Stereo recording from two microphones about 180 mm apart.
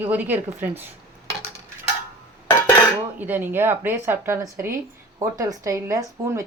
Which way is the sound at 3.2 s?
10° right (ahead or behind).